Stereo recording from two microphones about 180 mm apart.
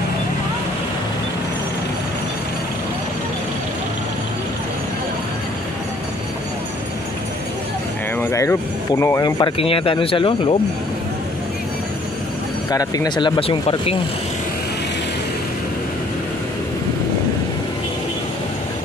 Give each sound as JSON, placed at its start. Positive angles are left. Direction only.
{"t": 8.2, "sound": "speech", "side_deg": 15}
{"t": 12.7, "sound": "speech", "side_deg": 20}